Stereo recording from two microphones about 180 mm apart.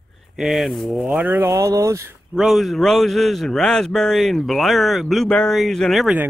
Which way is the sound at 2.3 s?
Centre (ahead or behind).